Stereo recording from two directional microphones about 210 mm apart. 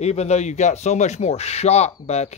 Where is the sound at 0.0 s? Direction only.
30° left (ahead or behind).